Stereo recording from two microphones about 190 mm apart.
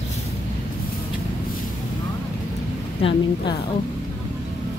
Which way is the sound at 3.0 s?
30° left (ahead or behind).